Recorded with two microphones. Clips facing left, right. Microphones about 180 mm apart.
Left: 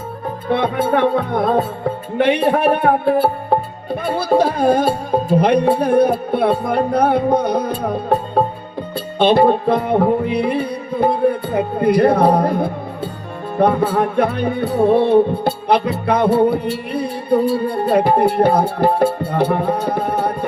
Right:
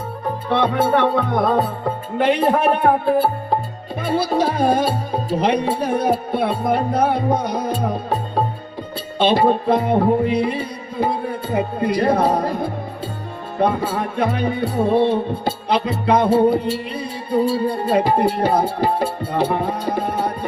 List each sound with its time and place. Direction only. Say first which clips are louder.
0.4 s music: left 1 dB; 55° left (ahead or behind)
2.1 s music: left 2 dB; 65° left (ahead or behind)